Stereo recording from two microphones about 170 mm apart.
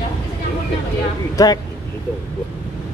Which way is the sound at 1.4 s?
20° left (ahead or behind).